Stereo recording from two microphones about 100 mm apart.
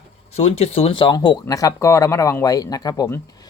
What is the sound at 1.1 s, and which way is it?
Speech, 45° left (ahead or behind).